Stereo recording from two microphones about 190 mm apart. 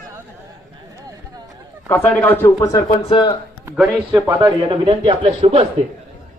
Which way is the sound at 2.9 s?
25° left (ahead or behind).